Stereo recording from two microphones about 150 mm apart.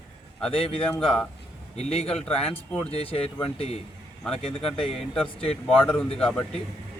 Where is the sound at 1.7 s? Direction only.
45° left (ahead or behind).